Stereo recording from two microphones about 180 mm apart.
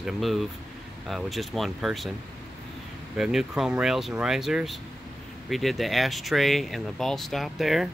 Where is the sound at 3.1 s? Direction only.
5° right (ahead or behind).